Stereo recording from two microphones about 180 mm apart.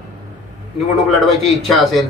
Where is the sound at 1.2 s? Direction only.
Centre (ahead or behind).